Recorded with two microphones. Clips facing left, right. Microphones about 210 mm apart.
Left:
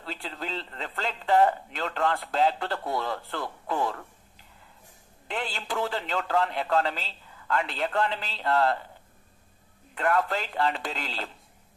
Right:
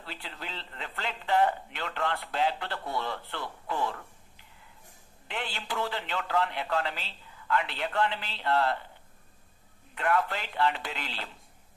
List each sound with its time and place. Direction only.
0.0 s speech: 45° left (ahead or behind)
5.3 s speech: 45° left (ahead or behind)
9.9 s speech: 45° left (ahead or behind)